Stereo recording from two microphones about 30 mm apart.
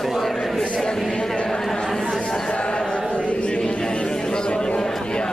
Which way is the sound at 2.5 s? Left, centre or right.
Left.